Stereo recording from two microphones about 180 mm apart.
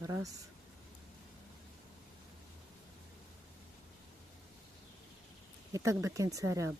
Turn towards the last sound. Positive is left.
turn(degrees=-15)  # may be behind; listen again after turning